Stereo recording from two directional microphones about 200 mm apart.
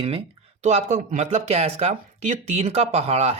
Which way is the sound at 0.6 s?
35° right (ahead or behind).